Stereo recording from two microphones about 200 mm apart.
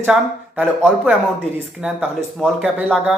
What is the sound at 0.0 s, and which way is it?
Speech, 5° right (ahead or behind).